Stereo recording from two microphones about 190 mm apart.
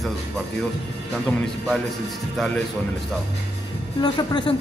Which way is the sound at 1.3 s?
5° left (ahead or behind).